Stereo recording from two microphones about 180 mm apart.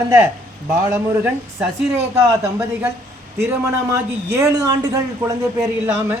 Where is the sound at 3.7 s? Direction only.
15° right (ahead or behind).